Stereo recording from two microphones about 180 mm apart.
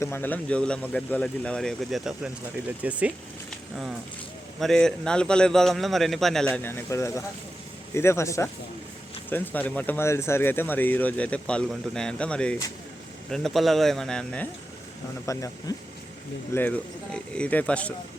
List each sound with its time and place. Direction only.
0.0 s speech: 10° left (ahead or behind); by 3.1 s 10° right (ahead or behind)
4.6 s speech: 5° left (ahead or behind)
15.3 s speech: 15° left (ahead or behind)